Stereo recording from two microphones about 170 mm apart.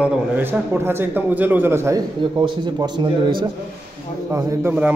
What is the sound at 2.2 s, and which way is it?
A man's voice, 25° right (ahead or behind).